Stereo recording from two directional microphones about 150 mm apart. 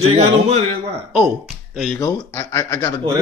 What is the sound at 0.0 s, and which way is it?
Speech, 45° right (ahead or behind).